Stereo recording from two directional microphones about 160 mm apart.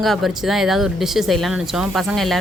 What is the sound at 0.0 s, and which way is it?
Speech, centre (ahead or behind).